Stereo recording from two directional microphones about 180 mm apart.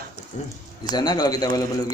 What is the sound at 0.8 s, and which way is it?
Speech, 20° left (ahead or behind).